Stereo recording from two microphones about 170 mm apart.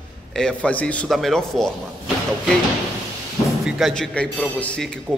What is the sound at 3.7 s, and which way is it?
A man's voice, centre (ahead or behind).